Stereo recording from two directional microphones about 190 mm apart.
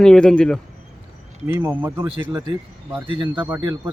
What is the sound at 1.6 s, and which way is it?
Speech, 10° right (ahead or behind).